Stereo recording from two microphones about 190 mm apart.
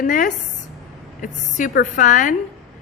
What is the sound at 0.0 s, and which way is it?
A woman's voice, 45° left (ahead or behind).